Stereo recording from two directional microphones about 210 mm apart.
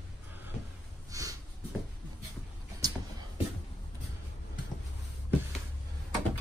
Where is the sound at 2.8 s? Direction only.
20° right (ahead or behind).